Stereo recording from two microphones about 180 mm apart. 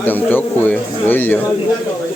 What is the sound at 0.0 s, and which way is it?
Speech, 10° left (ahead or behind).